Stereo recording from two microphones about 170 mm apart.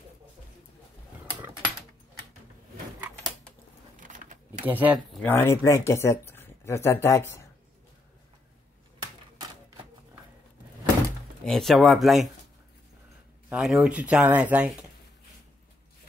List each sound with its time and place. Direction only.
4.0 s a sound: 50° right (ahead or behind)
4.6 s speech: 10° right (ahead or behind)
5.1 s speech: 10° left (ahead or behind)
11.4 s speech: centre (ahead or behind)
13.5 s speech: 5° right (ahead or behind)